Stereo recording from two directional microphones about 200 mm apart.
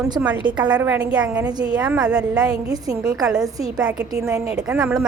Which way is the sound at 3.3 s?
5° right (ahead or behind).